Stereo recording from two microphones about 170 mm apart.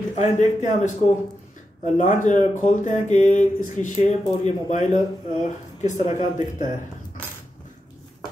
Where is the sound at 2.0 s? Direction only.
45° left (ahead or behind).